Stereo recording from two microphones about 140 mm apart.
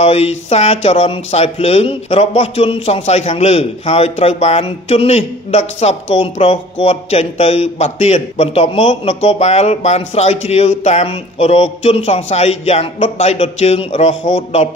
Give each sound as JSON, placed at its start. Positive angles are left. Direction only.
{"t": 0.0, "sound": "speech", "side_deg": 50}